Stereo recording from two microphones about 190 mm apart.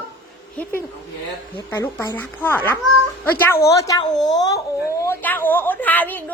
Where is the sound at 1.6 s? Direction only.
10° left (ahead or behind).